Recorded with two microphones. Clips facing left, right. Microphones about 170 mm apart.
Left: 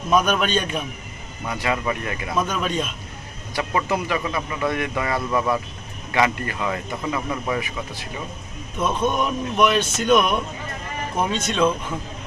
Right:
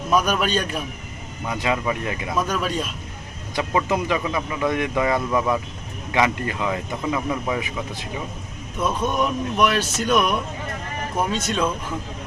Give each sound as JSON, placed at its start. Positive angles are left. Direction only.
{"t": 0.1, "sound": "speech", "side_deg": -5}
{"t": 1.5, "sound": "speech", "side_deg": -15}
{"t": 2.3, "sound": "speech", "side_deg": -5}
{"t": 8.8, "sound": "speech", "side_deg": 0}
{"t": 11.4, "sound": "speech", "side_deg": 0}